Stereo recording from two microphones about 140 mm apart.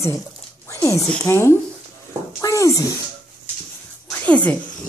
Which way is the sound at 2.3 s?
20° left (ahead or behind).